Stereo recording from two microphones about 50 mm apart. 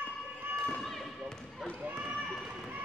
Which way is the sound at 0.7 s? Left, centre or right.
Centre.